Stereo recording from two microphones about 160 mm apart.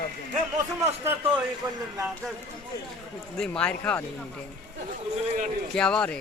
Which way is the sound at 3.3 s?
5° left (ahead or behind).